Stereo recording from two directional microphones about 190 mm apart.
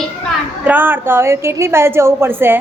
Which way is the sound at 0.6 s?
10° right (ahead or behind).